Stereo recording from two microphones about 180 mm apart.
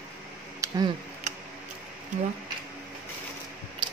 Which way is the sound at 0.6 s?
15° right (ahead or behind).